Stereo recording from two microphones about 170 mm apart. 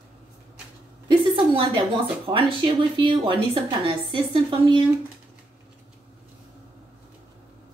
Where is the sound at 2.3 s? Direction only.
30° right (ahead or behind).